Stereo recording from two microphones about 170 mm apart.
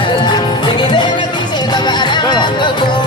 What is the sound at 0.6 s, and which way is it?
Music, 25° left (ahead or behind).